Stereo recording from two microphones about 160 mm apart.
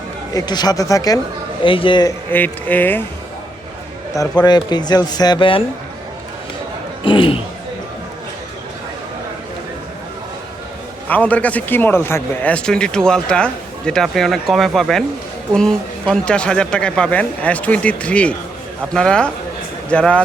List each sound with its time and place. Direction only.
0.3 s speech: 25° left (ahead or behind)
1.6 s a man's voice: 30° left (ahead or behind)
2.3 s speech: 10° left (ahead or behind)
4.1 s speech: 25° left (ahead or behind)
7.0 s a sound: 30° left (ahead or behind)
11.1 s speech: 10° left (ahead or behind)